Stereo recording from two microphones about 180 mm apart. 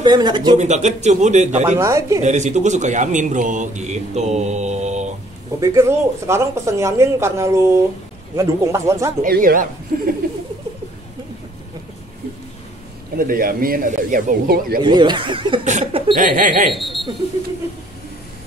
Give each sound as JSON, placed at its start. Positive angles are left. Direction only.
{"t": 0.0, "sound": "speech", "side_deg": -25}
{"t": 0.6, "sound": "a man's voice", "side_deg": -40}
{"t": 1.8, "sound": "speech", "side_deg": -15}
{"t": 2.2, "sound": "a man's voice", "side_deg": -40}
{"t": 5.6, "sound": "speech", "side_deg": -15}
{"t": 9.2, "sound": "speech", "side_deg": -50}
{"t": 13.2, "sound": "speech", "side_deg": -55}
{"t": 14.8, "sound": "a man's voice", "side_deg": -25}
{"t": 16.2, "sound": "speech", "side_deg": -45}
{"t": 16.7, "sound": "speech", "side_deg": 0}